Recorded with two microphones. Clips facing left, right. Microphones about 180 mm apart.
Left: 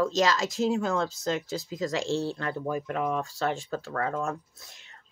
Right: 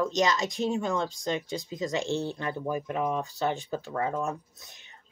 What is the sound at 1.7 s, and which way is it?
Speech, 20° right (ahead or behind).